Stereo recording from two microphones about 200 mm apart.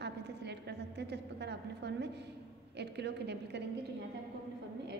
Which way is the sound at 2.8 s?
55° right (ahead or behind).